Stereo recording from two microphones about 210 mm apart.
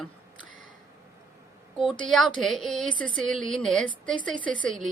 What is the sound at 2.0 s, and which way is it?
A woman's voice, centre (ahead or behind).